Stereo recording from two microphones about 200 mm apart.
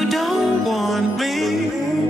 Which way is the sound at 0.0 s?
Centre (ahead or behind).